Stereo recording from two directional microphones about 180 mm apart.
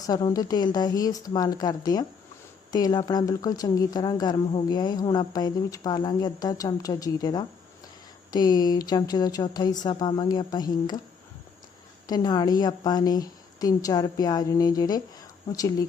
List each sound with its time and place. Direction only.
0.1 s speech: 20° left (ahead or behind)
12.0 s speech: 20° left (ahead or behind)